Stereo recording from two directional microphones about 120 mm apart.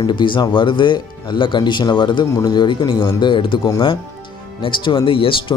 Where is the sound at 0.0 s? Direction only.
40° left (ahead or behind).